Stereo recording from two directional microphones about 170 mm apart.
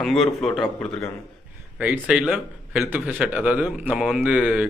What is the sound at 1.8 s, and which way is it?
A man's voice, 10° right (ahead or behind).